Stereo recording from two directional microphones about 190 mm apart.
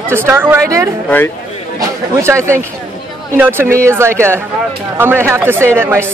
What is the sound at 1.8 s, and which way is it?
A man's voice, 15° right (ahead or behind).